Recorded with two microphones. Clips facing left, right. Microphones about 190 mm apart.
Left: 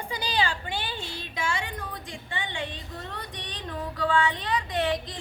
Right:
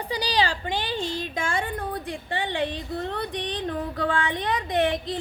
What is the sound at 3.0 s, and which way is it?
Music, 60° right (ahead or behind).